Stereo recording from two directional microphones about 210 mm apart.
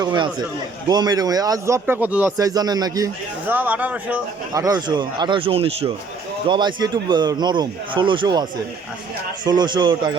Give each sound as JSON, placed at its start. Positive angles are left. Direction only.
{"t": 0.0, "sound": "speech", "side_deg": -20}